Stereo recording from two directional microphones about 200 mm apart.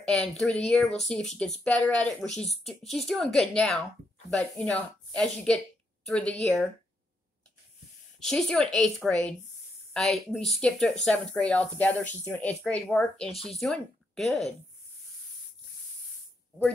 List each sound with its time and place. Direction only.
0.0 s speech: centre (ahead or behind)
8.2 s speech: centre (ahead or behind)